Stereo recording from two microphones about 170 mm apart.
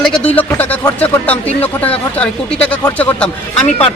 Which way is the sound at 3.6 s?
35° left (ahead or behind).